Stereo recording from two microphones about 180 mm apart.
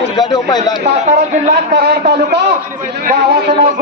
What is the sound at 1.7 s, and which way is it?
A man's voice, 65° right (ahead or behind).